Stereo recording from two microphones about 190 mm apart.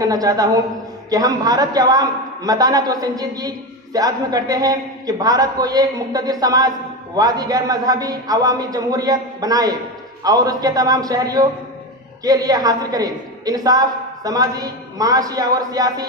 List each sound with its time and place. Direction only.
0.0 s a woman's voice: 20° right (ahead or behind)